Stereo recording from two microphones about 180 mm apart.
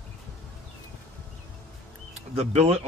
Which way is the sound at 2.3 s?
35° right (ahead or behind).